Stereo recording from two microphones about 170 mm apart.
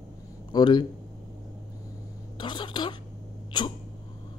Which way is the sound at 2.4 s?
30° left (ahead or behind).